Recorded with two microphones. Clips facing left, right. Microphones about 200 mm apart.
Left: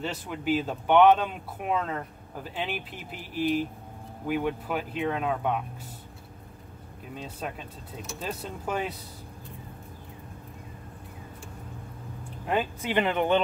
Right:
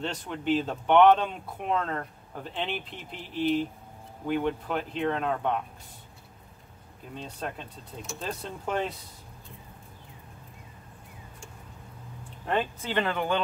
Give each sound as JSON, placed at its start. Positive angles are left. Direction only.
{"t": 0.0, "sound": "speech", "side_deg": 5}
{"t": 7.2, "sound": "speech", "side_deg": 5}
{"t": 12.4, "sound": "speech", "side_deg": 10}